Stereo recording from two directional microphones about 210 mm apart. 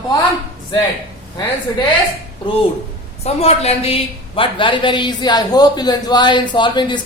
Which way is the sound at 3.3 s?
30° left (ahead or behind).